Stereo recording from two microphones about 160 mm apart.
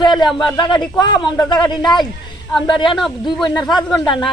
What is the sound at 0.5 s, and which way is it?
Speech, 30° left (ahead or behind).